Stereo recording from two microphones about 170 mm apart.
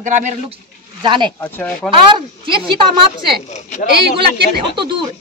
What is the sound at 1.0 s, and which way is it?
Speech, 25° right (ahead or behind).